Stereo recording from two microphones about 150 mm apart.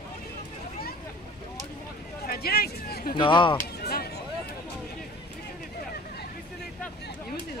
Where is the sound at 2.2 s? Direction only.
90° left.